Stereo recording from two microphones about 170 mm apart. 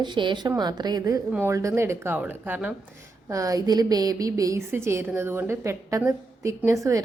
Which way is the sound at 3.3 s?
20° right (ahead or behind).